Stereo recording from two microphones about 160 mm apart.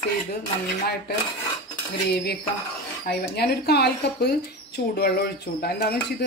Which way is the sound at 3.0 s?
85° left.